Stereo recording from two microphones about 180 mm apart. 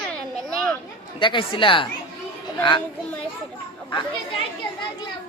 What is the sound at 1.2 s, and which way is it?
Speech, 25° left (ahead or behind).